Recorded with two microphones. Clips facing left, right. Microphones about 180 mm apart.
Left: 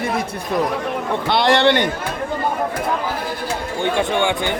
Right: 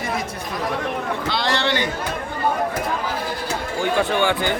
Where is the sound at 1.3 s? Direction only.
60° left (ahead or behind).